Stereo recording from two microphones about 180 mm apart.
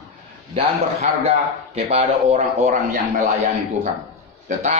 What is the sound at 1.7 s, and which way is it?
A man's voice, 35° right (ahead or behind).